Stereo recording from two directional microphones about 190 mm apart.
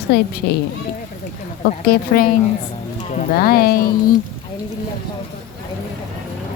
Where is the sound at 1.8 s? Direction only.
50° left (ahead or behind).